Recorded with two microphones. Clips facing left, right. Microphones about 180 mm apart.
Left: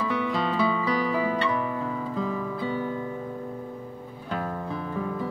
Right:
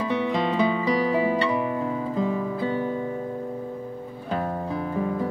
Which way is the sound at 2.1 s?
20° right (ahead or behind).